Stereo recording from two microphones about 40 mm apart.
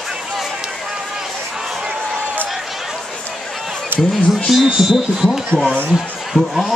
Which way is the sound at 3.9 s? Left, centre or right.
Right.